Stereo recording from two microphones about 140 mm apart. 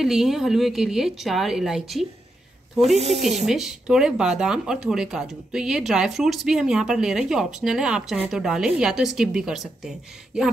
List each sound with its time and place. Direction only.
0.0 s speech: 5° right (ahead or behind)
3.0 s speech: 50° right (ahead or behind)
3.4 s speech: 5° right (ahead or behind)